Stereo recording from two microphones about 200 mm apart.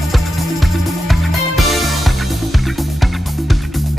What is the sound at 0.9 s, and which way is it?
Music, centre (ahead or behind).